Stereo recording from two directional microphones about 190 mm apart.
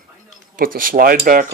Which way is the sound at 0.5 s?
50° right (ahead or behind).